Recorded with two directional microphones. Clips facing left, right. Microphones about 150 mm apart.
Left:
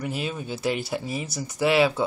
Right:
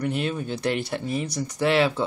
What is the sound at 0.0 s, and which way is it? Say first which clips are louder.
Speech: right 4 dB; 5° left (ahead or behind).